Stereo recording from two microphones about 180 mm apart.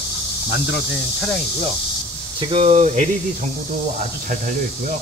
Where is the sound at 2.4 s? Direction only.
35° right (ahead or behind).